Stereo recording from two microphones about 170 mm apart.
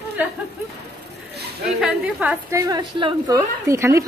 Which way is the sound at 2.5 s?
20° right (ahead or behind).